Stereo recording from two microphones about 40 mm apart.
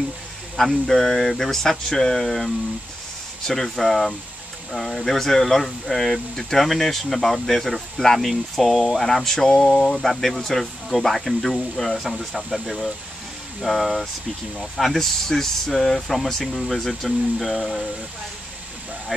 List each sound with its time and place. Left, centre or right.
0.6 s speech: centre